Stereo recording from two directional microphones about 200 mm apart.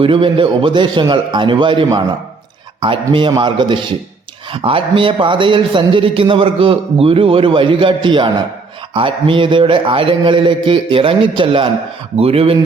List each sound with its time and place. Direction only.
0.0 s a man's voice: 25° right (ahead or behind)